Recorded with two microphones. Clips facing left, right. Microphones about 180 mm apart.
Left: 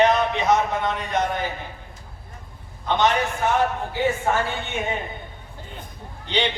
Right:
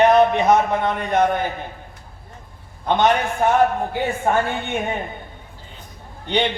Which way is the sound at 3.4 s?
55° right (ahead or behind).